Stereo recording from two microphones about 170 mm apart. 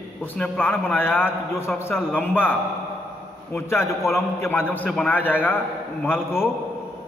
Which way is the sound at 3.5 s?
15° left (ahead or behind).